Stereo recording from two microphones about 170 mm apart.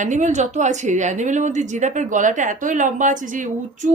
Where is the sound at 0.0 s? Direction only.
45° right (ahead or behind).